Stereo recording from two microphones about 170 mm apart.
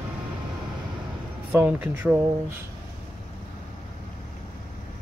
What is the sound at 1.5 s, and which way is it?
Speech, 10° right (ahead or behind).